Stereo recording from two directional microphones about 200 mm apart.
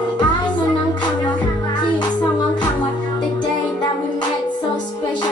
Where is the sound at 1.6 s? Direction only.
20° left (ahead or behind).